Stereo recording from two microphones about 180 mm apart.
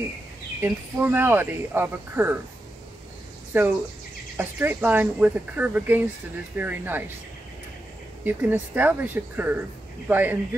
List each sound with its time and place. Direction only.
0.6 s speech: 10° right (ahead or behind)
3.5 s speech: 10° right (ahead or behind)
8.2 s speech: 10° right (ahead or behind)